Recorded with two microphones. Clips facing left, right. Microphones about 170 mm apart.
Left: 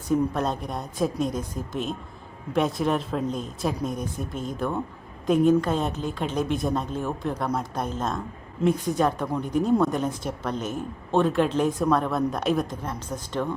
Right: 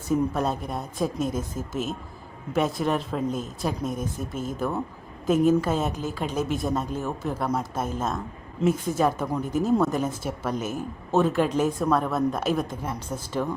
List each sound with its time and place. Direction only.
0.1 s speech: 5° right (ahead or behind)